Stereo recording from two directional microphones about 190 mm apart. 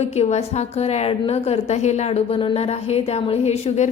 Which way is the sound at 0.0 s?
35° left (ahead or behind).